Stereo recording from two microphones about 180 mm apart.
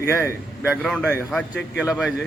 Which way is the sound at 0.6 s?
Centre (ahead or behind).